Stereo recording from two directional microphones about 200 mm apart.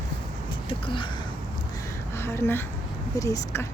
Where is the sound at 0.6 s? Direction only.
25° left (ahead or behind).